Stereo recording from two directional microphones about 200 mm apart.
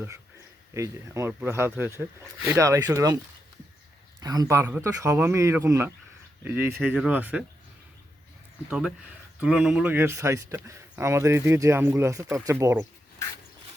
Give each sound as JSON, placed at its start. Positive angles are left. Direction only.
{"t": 0.7, "sound": "a man's voice", "side_deg": -15}
{"t": 4.2, "sound": "a man's voice", "side_deg": -20}
{"t": 9.4, "sound": "a man's voice", "side_deg": -5}